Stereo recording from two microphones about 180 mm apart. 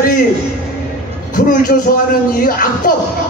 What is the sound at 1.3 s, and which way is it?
A man's voice, 50° left (ahead or behind).